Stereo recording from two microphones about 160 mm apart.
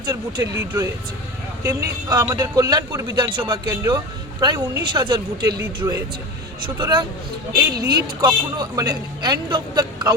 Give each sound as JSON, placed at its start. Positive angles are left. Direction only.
{"t": 0.0, "sound": "a woman's voice", "side_deg": -20}
{"t": 7.5, "sound": "a woman's voice", "side_deg": -25}